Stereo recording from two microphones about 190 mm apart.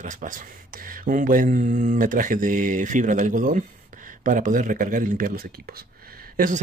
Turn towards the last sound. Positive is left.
turn(degrees=-45)  # may be behind; listen again after turning